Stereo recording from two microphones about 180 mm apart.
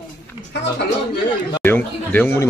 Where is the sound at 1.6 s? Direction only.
10° left (ahead or behind).